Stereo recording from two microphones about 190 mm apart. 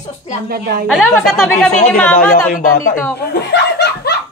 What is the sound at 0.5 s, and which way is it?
Speech, 55° right (ahead or behind).